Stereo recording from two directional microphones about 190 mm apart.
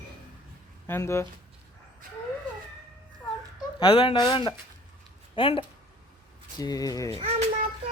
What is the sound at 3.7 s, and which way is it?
Speech, 30° left (ahead or behind).